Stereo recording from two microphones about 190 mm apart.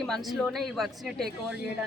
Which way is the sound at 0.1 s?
Centre (ahead or behind).